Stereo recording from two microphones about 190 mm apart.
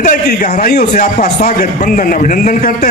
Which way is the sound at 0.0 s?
45° left (ahead or behind).